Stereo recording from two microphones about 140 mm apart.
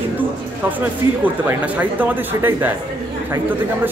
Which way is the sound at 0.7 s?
10° right (ahead or behind).